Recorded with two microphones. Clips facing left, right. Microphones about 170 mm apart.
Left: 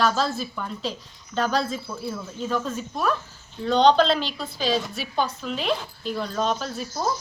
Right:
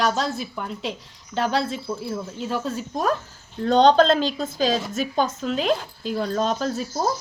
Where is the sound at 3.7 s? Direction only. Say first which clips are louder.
Right 2 dB; 45° right (ahead or behind).